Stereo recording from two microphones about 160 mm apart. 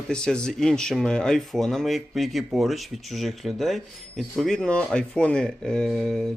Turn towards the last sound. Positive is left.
turn(degrees=0)  # may be behind; listen again after turning